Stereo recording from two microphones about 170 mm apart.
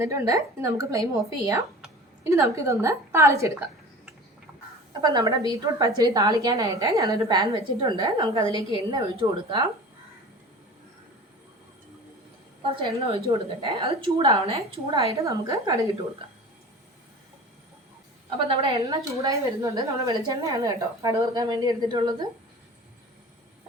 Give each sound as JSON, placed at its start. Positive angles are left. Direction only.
{"t": 0.0, "sound": "a woman's voice", "side_deg": -15}
{"t": 5.0, "sound": "a woman's voice", "side_deg": -25}
{"t": 12.7, "sound": "a woman's voice", "side_deg": -30}
{"t": 15.1, "sound": "a woman's voice", "side_deg": -20}
{"t": 18.3, "sound": "a woman's voice", "side_deg": -35}
{"t": 18.9, "sound": "a woman's voice", "side_deg": -20}